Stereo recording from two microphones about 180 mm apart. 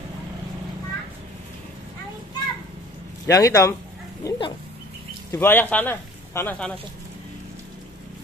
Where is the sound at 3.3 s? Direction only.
20° left (ahead or behind).